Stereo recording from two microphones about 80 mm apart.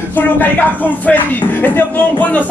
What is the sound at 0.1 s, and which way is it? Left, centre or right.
A man's voice, left.